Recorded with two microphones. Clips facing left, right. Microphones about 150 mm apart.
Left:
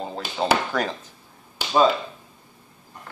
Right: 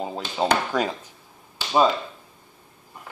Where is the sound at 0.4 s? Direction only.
15° right (ahead or behind).